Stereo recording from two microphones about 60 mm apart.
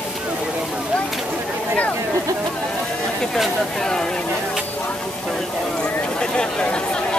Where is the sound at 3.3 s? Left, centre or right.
Centre.